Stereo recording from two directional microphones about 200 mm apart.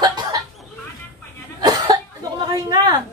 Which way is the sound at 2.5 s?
20° right (ahead or behind).